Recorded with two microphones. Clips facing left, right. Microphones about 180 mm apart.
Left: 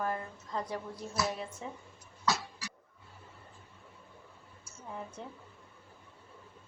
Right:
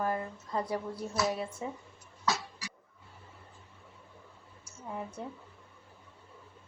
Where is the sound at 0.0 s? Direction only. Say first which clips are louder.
Right 3 dB; 10° right (ahead or behind).